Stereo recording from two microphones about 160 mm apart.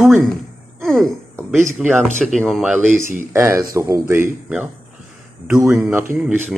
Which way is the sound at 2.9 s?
50° right (ahead or behind).